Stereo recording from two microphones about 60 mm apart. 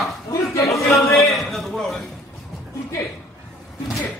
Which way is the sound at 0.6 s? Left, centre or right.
Left.